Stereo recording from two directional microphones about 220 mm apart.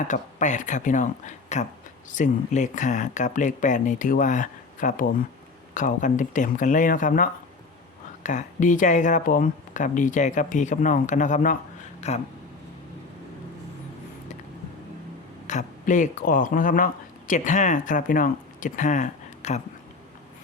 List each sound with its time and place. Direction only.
0.1 s speech: 35° left (ahead or behind)
15.4 s speech: 35° left (ahead or behind)